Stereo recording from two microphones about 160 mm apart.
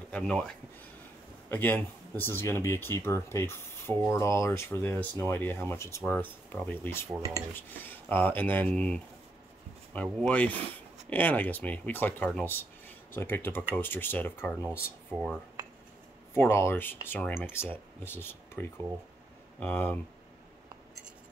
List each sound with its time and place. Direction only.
0.1 s speech: 5° left (ahead or behind)
7.2 s dishes: 20° right (ahead or behind)
7.8 s speech: 10° left (ahead or behind)
10.2 s speech: 10° left (ahead or behind)
14.6 s speech: 10° right (ahead or behind)
16.3 s speech: 15° left (ahead or behind)